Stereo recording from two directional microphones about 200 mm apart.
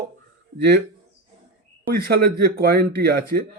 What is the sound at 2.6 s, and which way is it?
Speech, 50° right (ahead or behind).